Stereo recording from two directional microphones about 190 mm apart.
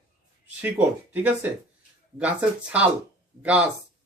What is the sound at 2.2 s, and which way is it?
Speech, 5° right (ahead or behind).